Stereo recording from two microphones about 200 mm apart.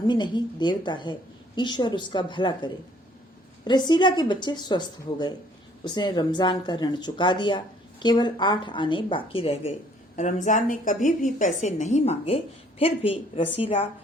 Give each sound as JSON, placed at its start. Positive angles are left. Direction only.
{"t": 0.1, "sound": "a woman's voice", "side_deg": 20}